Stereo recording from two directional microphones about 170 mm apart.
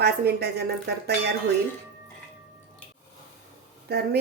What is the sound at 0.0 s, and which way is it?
Speech, 70° right (ahead or behind).